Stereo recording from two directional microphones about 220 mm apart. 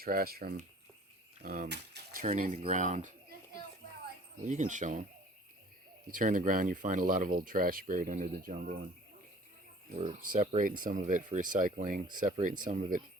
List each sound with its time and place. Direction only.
0.0 s speech: 40° right (ahead or behind)
2.2 s speech: 30° right (ahead or behind)
4.4 s speech: 35° right (ahead or behind)
6.1 s speech: 35° right (ahead or behind)
9.9 s speech: 35° right (ahead or behind)